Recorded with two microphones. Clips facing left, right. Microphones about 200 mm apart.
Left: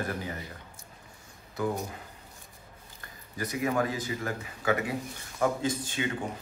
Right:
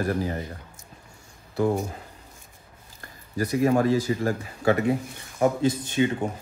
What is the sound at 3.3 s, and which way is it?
Speech, 35° right (ahead or behind).